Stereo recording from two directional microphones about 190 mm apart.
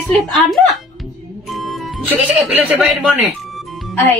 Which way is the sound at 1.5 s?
Centre (ahead or behind).